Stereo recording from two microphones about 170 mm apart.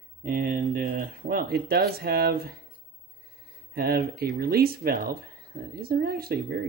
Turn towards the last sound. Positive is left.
turn(degrees=-65)  # may be behind; listen again after turning